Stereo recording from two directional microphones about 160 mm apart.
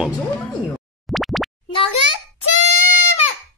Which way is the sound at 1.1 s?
Centre (ahead or behind).